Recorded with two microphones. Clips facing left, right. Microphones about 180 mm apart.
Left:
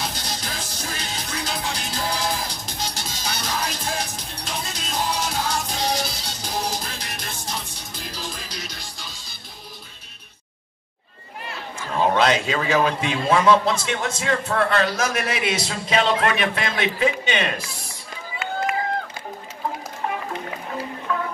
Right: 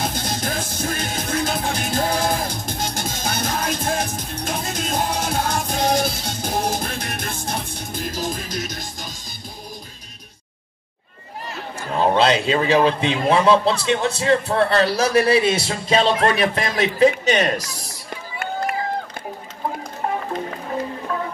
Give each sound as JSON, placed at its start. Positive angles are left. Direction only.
{"t": 0.0, "sound": "music", "side_deg": -50}
{"t": 12.2, "sound": "a man's voice", "side_deg": -30}
{"t": 21.1, "sound": "music", "side_deg": -35}